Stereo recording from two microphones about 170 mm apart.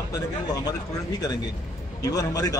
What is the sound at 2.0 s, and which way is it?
Speech, 20° left (ahead or behind).